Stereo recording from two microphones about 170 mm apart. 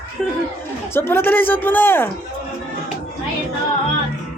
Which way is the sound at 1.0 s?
15° left (ahead or behind).